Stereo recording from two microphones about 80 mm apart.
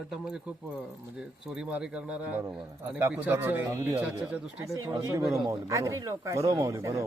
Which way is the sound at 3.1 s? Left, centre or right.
Right.